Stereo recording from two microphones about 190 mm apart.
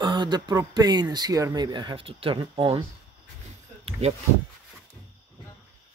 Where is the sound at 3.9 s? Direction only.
30° right (ahead or behind).